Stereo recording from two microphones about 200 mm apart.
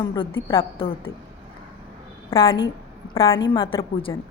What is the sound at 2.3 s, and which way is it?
A woman's voice, 25° left (ahead or behind).